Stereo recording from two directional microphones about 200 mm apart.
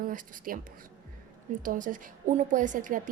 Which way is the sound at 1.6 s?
40° right (ahead or behind).